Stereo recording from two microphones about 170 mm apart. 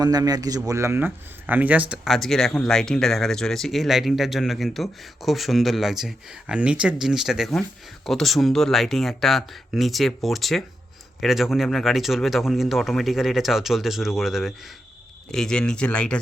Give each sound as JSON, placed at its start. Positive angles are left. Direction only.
{"t": 0.0, "sound": "a man's voice", "side_deg": -20}